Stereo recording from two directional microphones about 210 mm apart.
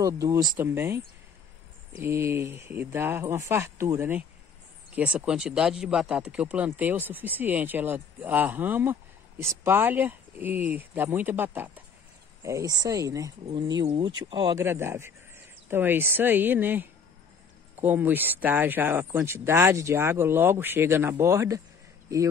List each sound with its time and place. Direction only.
0.0 s speech: 15° right (ahead or behind)